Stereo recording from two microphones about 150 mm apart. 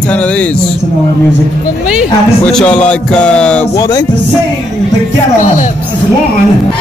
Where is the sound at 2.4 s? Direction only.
5° left (ahead or behind).